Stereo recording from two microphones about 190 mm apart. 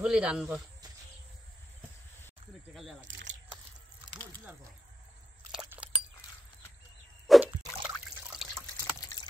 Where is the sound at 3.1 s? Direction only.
70° right (ahead or behind).